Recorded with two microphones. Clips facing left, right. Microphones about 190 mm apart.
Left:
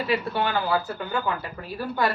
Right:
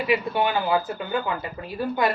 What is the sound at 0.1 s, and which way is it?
Speech, 15° right (ahead or behind).